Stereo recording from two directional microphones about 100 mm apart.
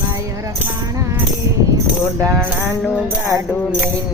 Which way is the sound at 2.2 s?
15° left (ahead or behind).